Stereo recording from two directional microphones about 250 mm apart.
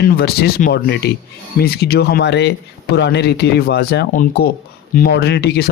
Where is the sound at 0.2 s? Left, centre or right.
Left.